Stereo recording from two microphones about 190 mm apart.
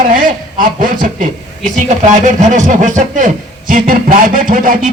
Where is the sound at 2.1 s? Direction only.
40° right (ahead or behind).